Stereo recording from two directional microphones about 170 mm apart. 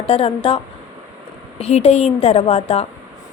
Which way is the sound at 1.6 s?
40° left (ahead or behind).